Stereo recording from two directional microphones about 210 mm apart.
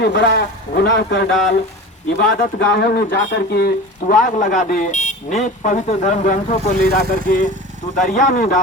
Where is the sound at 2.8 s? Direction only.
50° left (ahead or behind).